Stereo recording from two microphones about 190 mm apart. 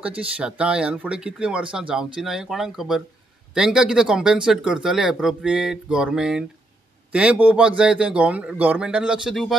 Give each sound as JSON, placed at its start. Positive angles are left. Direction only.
{"t": 0.0, "sound": "speech", "side_deg": -5}